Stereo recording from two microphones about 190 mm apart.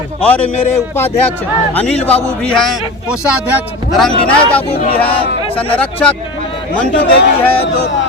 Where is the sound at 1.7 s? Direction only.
5° left (ahead or behind).